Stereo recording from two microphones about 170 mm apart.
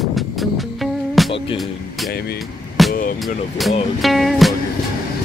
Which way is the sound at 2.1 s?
65° left (ahead or behind).